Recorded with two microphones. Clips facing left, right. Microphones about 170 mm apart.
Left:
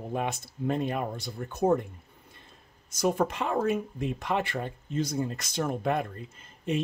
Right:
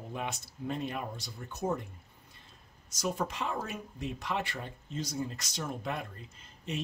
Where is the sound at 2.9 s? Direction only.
55° left (ahead or behind).